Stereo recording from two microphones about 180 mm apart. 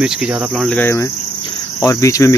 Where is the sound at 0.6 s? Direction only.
10° left (ahead or behind).